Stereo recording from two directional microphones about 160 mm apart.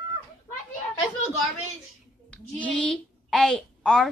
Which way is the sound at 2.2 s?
10° left (ahead or behind).